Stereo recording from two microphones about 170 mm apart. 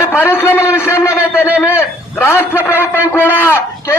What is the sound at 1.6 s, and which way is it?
A man's voice, 15° left (ahead or behind).